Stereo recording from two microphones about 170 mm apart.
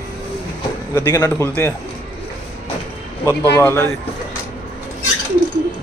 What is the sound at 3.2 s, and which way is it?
Speech, 15° left (ahead or behind).